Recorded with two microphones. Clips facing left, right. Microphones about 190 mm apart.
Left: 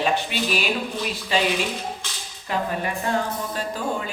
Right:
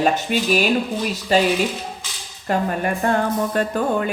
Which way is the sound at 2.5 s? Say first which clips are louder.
Right 5 dB; 50° right (ahead or behind).